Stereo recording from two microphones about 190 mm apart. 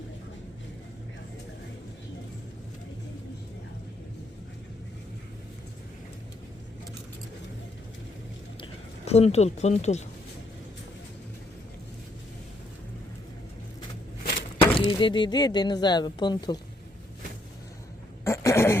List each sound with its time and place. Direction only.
8.6 s speech: 35° left (ahead or behind)
14.6 s speech: 25° left (ahead or behind)
18.3 s a sound: 15° left (ahead or behind)